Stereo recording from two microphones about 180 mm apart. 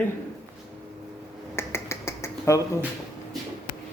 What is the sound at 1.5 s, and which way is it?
Finger snapping, 15° left (ahead or behind).